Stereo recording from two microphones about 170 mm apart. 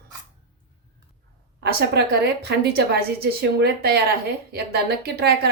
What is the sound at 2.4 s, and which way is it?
A woman's voice, 70° right (ahead or behind).